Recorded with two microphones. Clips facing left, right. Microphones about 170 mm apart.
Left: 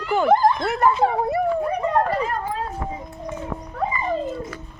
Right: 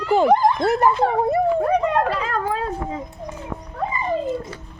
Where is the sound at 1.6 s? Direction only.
90° right.